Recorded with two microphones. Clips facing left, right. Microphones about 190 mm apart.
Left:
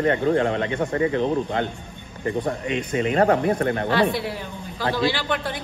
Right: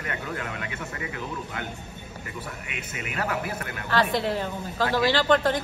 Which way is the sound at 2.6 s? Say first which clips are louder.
Left 13 dB; 30° left (ahead or behind).